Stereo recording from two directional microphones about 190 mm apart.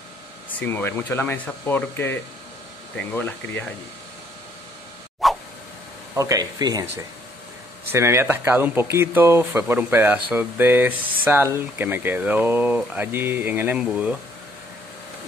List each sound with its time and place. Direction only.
0.6 s speech: 10° left (ahead or behind)
5.2 s a sound: centre (ahead or behind)
6.1 s speech: 15° right (ahead or behind)